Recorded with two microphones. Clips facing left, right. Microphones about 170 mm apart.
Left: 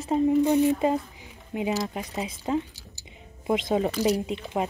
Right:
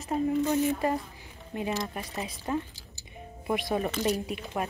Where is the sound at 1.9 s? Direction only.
20° left (ahead or behind).